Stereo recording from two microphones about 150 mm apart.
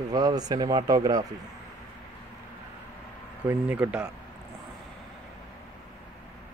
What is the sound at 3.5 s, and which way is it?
Speech, 10° right (ahead or behind).